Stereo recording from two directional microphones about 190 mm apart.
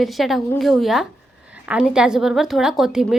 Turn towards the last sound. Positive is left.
turn(degrees=0)  # may be behind; listen again after turning